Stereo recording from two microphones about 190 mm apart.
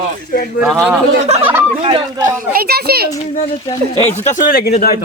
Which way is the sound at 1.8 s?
25° right (ahead or behind).